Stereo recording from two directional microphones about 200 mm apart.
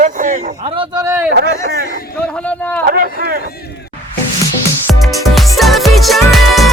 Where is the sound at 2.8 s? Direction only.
50° right (ahead or behind).